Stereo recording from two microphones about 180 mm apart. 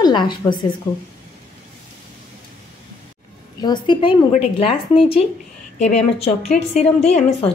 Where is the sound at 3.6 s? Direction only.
25° left (ahead or behind).